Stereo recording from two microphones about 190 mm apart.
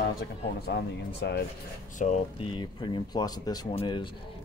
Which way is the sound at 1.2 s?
60° left (ahead or behind).